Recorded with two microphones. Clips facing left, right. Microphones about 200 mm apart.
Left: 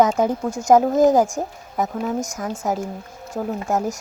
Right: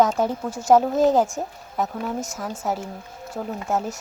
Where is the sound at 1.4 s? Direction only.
10° left (ahead or behind).